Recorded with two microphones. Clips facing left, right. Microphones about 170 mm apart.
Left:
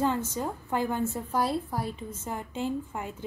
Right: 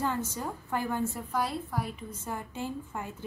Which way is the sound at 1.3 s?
30° left (ahead or behind).